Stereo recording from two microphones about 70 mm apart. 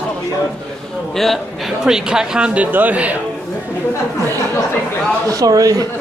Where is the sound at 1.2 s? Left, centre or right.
Centre.